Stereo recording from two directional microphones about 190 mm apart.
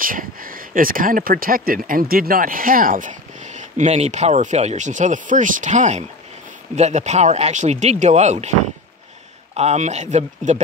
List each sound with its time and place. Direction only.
0.0 s speech: 45° right (ahead or behind)